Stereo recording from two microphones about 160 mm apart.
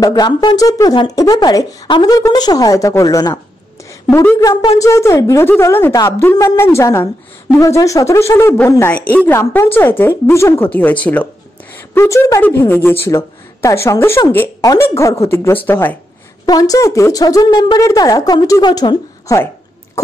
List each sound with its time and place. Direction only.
0.0 s speech: 25° left (ahead or behind)
16.4 s speech: 25° left (ahead or behind)